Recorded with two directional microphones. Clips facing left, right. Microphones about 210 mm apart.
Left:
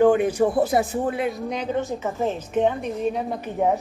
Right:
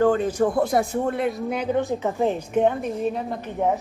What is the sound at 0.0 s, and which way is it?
A man's voice, 15° left (ahead or behind).